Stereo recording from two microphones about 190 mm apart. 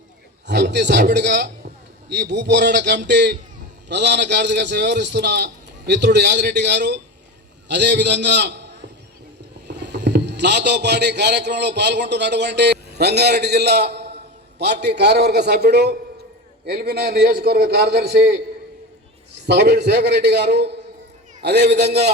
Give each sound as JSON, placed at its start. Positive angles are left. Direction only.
{"t": 0.4, "sound": "a sound", "side_deg": -60}
{"t": 2.3, "sound": "a man's voice", "side_deg": -65}
{"t": 19.5, "sound": "a man's voice", "side_deg": -60}